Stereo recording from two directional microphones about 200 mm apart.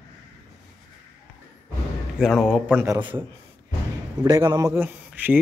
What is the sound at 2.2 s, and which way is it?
Speech, centre (ahead or behind).